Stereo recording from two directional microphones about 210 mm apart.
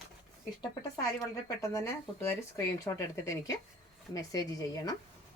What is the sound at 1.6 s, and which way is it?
Speech, 15° left (ahead or behind).